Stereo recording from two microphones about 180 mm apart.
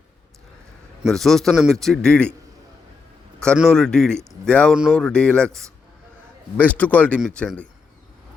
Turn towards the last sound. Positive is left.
turn(degrees=5)  # may be behind; listen again after turning